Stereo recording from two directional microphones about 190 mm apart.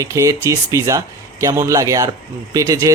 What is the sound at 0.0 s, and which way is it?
Speech, 15° right (ahead or behind).